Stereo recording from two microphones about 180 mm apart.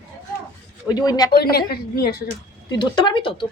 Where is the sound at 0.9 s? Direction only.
20° left (ahead or behind).